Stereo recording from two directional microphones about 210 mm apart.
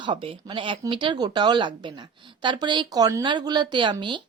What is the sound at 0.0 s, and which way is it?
Speech, 25° right (ahead or behind).